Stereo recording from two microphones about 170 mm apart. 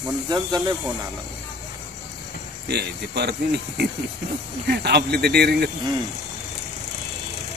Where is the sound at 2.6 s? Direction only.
75° right (ahead or behind).